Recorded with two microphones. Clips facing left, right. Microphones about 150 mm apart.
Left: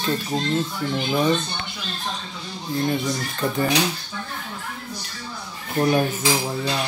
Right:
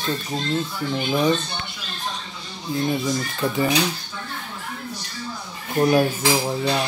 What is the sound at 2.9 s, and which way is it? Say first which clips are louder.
Speech: right 1 dB; 5° right (ahead or behind).